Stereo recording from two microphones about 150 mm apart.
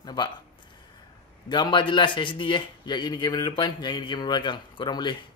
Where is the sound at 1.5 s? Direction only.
30° left (ahead or behind).